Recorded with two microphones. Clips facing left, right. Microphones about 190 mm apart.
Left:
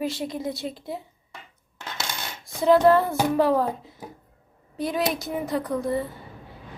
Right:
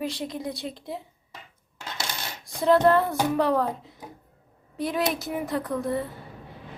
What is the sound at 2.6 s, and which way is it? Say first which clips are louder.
A woman's voice: left 2 dB; centre (ahead or behind).